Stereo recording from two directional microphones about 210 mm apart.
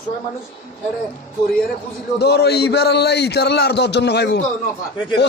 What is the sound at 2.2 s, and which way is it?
A man's voice, 50° left (ahead or behind).